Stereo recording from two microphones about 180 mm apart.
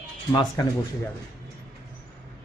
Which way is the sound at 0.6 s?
25° left (ahead or behind).